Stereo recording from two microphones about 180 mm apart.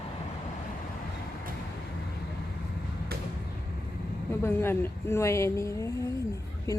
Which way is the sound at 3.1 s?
60° right (ahead or behind).